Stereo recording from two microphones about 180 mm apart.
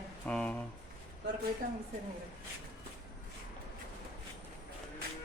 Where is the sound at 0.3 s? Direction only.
5° left (ahead or behind).